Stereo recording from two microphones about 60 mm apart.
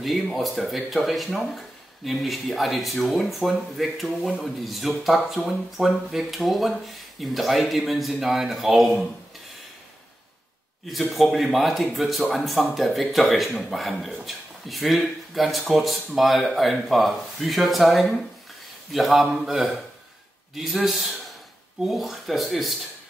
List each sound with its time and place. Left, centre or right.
0.0 s speech: centre
10.9 s speech: centre